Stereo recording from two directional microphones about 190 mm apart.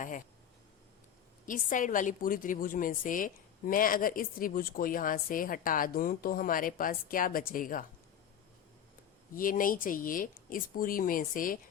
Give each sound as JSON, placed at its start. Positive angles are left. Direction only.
{"t": 1.5, "sound": "a woman's voice", "side_deg": 45}
{"t": 9.3, "sound": "a woman's voice", "side_deg": 45}